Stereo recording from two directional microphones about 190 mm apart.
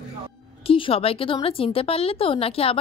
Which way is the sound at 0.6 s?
30° left (ahead or behind).